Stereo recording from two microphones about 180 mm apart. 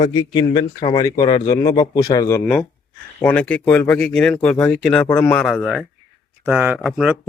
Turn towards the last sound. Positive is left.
turn(degrees=-5)  # may be behind; listen again after turning